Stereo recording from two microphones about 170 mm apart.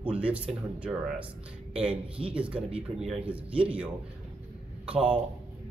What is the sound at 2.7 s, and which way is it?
Speech, 35° right (ahead or behind).